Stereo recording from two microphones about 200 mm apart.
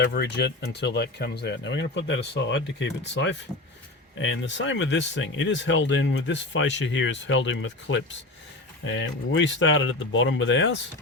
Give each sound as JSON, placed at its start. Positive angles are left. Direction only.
{"t": 0.0, "sound": "speech", "side_deg": 55}